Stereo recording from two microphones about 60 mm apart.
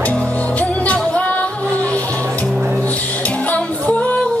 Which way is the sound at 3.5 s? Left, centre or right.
Left.